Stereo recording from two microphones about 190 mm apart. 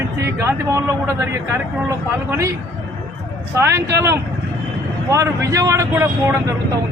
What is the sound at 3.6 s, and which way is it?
Speech, 15° right (ahead or behind).